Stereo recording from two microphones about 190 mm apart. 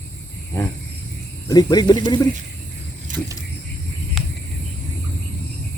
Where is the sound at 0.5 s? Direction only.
15° left (ahead or behind).